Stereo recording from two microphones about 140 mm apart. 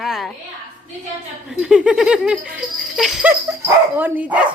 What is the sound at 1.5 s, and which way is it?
Laughter, 5° right (ahead or behind).